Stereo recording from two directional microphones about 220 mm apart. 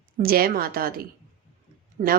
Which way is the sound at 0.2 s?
40° right (ahead or behind).